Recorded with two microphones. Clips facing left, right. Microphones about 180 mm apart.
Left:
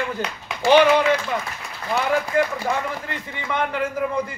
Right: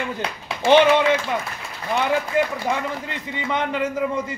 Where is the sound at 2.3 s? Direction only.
20° right (ahead or behind).